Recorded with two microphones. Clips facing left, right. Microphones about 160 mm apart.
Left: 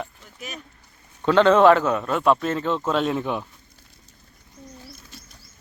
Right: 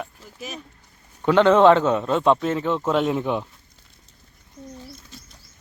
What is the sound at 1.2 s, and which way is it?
A man's voice, 15° right (ahead or behind).